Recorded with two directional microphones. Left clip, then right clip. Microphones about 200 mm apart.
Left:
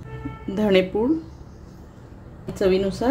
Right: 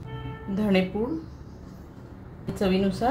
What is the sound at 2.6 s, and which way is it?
Speech, 35° left (ahead or behind).